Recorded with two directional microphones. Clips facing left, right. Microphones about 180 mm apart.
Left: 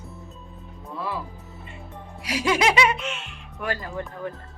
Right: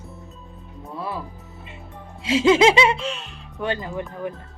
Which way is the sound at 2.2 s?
25° right (ahead or behind).